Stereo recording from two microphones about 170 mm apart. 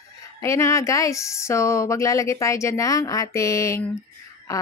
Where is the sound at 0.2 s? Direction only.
15° left (ahead or behind).